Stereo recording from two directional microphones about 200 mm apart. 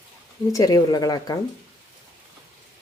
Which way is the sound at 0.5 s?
20° left (ahead or behind).